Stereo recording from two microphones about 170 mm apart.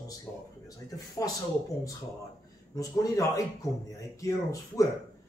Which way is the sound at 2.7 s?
20° left (ahead or behind).